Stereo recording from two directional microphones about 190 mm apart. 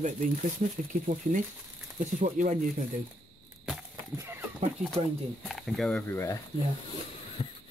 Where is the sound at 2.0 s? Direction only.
40° right (ahead or behind).